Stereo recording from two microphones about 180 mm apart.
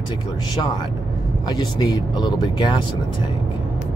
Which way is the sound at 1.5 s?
25° left (ahead or behind).